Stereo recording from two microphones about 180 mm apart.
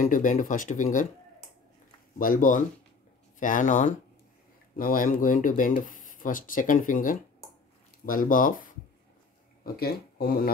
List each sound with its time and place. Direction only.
0.0 s speech: 45° left (ahead or behind)
2.1 s speech: 50° left (ahead or behind)